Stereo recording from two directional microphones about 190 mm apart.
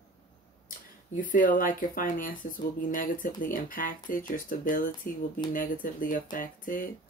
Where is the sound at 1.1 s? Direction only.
45° left (ahead or behind).